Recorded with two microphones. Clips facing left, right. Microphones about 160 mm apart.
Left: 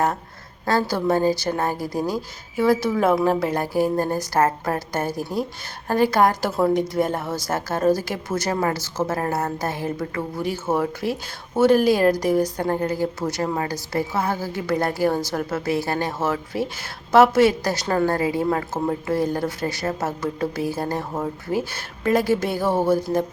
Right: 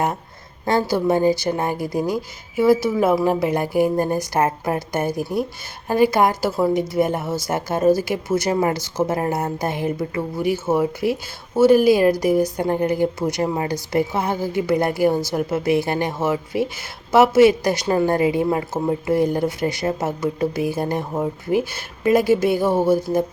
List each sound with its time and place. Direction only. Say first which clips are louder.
0.6 s a woman's voice: right 2 dB; 20° right (ahead or behind)